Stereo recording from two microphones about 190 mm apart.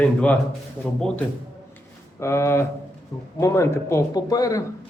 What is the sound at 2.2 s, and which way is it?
Speech, 15° left (ahead or behind).